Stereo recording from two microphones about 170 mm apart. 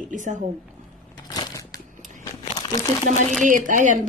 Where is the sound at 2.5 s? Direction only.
20° left (ahead or behind).